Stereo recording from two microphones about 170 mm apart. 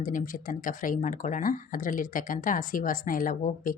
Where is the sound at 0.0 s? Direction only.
50° left (ahead or behind).